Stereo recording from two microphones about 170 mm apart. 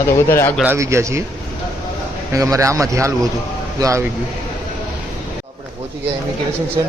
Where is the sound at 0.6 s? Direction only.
15° right (ahead or behind).